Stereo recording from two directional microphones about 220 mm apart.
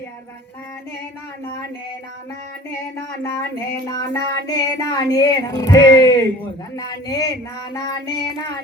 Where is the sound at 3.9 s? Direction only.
15° left (ahead or behind).